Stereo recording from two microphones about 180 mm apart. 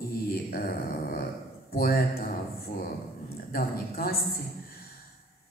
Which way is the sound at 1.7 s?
55° left (ahead or behind).